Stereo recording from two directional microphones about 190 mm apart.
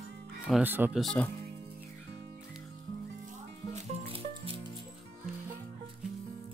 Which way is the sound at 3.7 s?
30° right (ahead or behind).